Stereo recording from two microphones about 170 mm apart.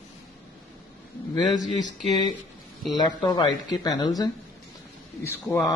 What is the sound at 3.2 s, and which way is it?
Speech, 25° left (ahead or behind).